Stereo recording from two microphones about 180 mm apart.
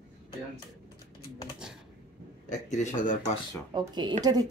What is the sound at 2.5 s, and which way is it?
Speech, 40° left (ahead or behind).